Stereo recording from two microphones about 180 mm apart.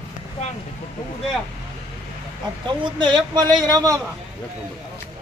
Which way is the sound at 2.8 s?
25° right (ahead or behind).